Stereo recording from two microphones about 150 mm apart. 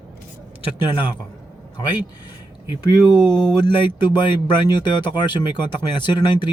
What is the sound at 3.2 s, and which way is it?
Speech, 25° left (ahead or behind).